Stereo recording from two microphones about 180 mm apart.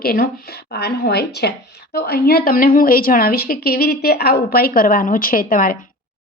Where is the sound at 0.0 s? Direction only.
55° left (ahead or behind).